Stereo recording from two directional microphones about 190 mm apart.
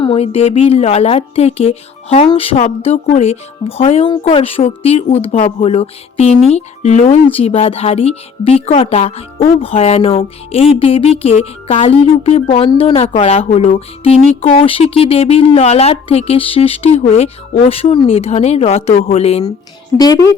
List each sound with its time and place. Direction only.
0.0 s speech: 30° left (ahead or behind)